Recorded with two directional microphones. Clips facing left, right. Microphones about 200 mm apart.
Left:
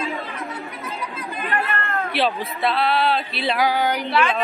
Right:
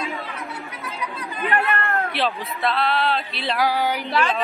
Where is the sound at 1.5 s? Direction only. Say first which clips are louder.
Right 3 dB; 65° right (ahead or behind).